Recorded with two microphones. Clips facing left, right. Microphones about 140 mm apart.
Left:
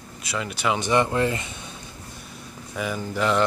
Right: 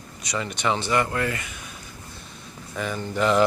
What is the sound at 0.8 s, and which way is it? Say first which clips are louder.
Speech: left 3 dB; 20° left (ahead or behind).